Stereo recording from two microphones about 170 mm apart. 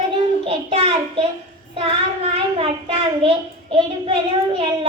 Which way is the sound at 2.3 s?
35° right (ahead or behind).